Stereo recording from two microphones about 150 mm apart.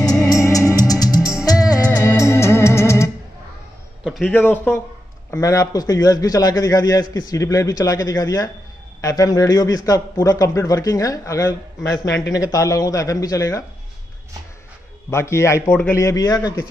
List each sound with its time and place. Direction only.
0.4 s music: 20° left (ahead or behind)
4.0 s a sound: centre (ahead or behind)
4.3 s a man's voice: 15° left (ahead or behind)
15.0 s a man's voice: 20° left (ahead or behind)
15.7 s a man's voice: 10° left (ahead or behind)
16.0 s a man's voice: 20° left (ahead or behind)